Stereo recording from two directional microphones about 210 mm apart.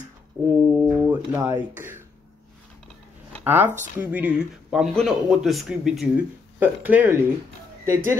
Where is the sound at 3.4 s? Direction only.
10° right (ahead or behind).